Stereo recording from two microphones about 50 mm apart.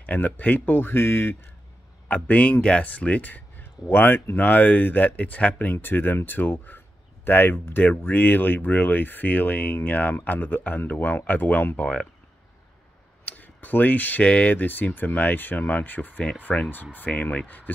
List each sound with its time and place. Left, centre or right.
0.0 s speech: left
0.7 s speech: left
2.0 s speech: left
4.4 s speech: left
11.7 s speech: centre
13.2 s clicking: left
14.2 s speech: left
14.5 s speech: left
16.5 s speech: centre
17.2 s speech: left